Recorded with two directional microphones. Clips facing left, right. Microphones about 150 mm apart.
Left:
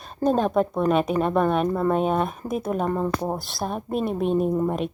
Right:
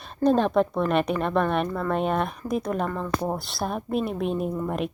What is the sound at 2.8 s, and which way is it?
Speech, 30° left (ahead or behind).